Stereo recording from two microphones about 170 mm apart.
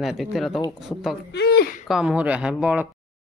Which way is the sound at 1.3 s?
70° left (ahead or behind).